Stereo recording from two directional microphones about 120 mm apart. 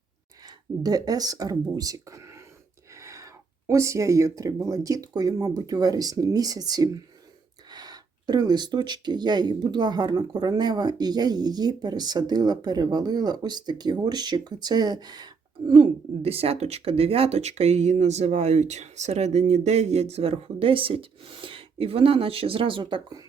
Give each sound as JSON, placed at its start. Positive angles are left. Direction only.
{"t": 0.4, "sound": "speech", "side_deg": -30}